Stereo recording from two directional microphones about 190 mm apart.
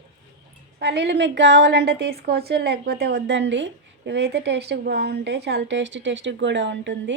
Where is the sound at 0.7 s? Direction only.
65° right (ahead or behind).